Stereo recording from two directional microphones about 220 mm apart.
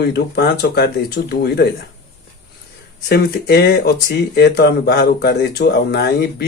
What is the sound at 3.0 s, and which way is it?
Speech, 45° left (ahead or behind).